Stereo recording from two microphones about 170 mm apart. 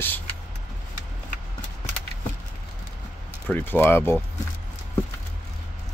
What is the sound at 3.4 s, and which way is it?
Speech, 10° left (ahead or behind).